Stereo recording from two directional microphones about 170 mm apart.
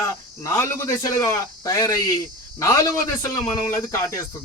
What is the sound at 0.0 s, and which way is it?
Speech, 15° left (ahead or behind).